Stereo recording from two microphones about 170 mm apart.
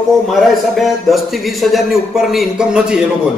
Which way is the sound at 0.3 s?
Centre (ahead or behind).